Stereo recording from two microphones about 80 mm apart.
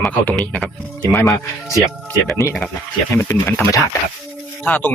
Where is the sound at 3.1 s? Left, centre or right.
Left.